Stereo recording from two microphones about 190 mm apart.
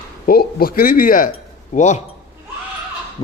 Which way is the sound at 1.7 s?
40° left (ahead or behind).